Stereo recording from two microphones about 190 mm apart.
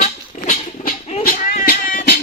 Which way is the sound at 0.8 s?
50° left (ahead or behind).